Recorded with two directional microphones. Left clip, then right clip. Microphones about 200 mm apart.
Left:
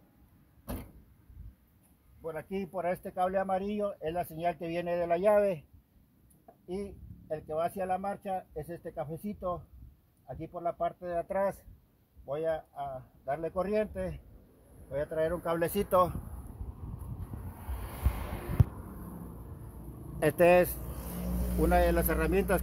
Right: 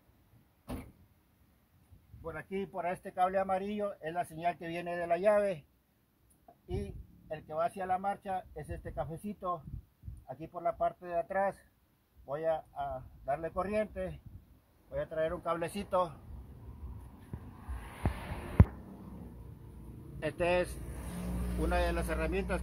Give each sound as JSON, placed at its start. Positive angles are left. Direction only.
{"t": 2.2, "sound": "speech", "side_deg": 15}
{"t": 6.7, "sound": "a sound", "side_deg": 20}
{"t": 7.4, "sound": "speech", "side_deg": 20}
{"t": 20.2, "sound": "speech", "side_deg": 40}